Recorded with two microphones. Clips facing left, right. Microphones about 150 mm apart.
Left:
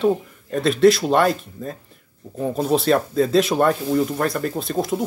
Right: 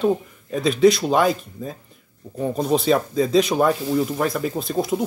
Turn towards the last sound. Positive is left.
turn(degrees=0)  # may be behind; listen again after turning